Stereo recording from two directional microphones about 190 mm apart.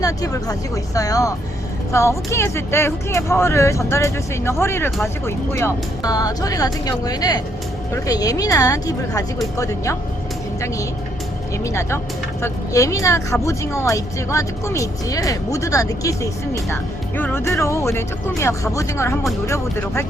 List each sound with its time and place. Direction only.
0.0 s speech: 20° left (ahead or behind)
11.6 s speech: 15° left (ahead or behind)